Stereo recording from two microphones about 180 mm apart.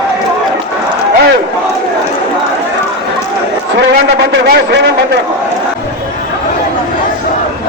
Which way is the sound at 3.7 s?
70° right (ahead or behind).